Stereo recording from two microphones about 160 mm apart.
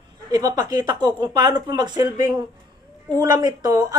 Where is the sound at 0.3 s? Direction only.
25° right (ahead or behind).